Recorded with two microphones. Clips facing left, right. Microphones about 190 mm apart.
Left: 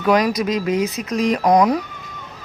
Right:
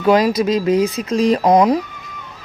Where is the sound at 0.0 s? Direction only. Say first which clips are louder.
Right 3 dB; 25° right (ahead or behind).